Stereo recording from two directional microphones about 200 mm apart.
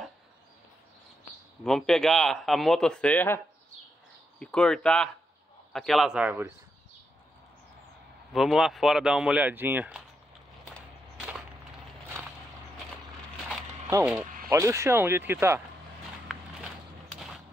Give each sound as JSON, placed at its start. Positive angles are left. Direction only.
{"t": 1.6, "sound": "speech", "side_deg": 0}
{"t": 4.4, "sound": "speech", "side_deg": 5}
{"t": 8.3, "sound": "speech", "side_deg": 0}
{"t": 11.1, "sound": "wood", "side_deg": -5}
{"t": 13.8, "sound": "speech", "side_deg": -15}